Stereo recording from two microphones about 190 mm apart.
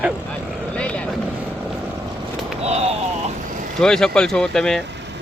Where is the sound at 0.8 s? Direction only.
5° left (ahead or behind).